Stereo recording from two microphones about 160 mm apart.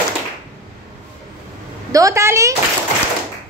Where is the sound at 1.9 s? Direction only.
20° right (ahead or behind).